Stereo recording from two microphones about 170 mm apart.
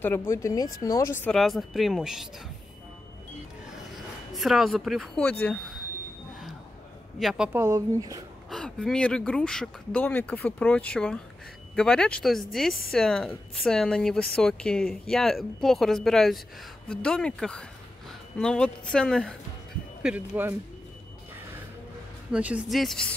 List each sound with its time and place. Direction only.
0.0 s speech: 15° left (ahead or behind)
1.3 s speech: centre (ahead or behind)
4.3 s speech: centre (ahead or behind)
7.2 s speech: centre (ahead or behind); by 8.2 s 20° right (ahead or behind)
8.5 s speech: 5° left (ahead or behind)
20.0 s speech: 5° right (ahead or behind)
22.3 s speech: 5° right (ahead or behind)